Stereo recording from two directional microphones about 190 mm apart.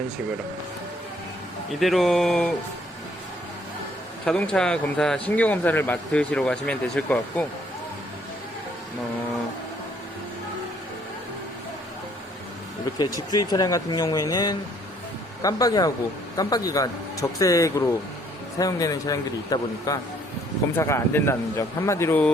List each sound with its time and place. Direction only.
1.7 s speech: centre (ahead or behind)
4.3 s speech: 5° left (ahead or behind)
13.3 s a man's voice: 20° left (ahead or behind)